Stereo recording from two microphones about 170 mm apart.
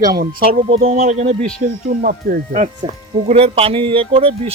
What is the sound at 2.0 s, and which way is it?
Speech, 60° right (ahead or behind).